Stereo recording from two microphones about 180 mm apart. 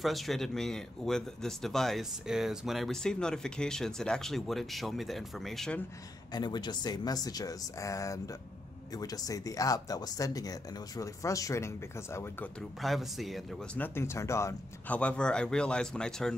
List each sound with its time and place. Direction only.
0.0 s speech: centre (ahead or behind)
6.3 s speech: 25° left (ahead or behind)
12.8 s speech: centre (ahead or behind)
13.7 s speech: 10° left (ahead or behind)